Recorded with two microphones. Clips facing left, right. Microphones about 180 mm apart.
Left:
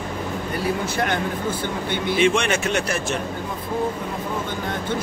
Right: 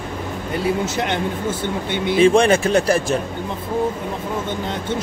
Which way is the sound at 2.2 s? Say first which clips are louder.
Right 7 dB; 35° right (ahead or behind).